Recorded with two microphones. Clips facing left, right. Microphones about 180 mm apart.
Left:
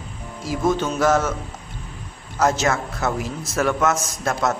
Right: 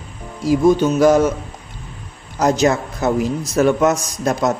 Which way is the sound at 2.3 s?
15° right (ahead or behind).